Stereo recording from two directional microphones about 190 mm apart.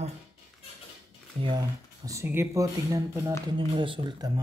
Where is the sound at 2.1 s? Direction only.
15° right (ahead or behind).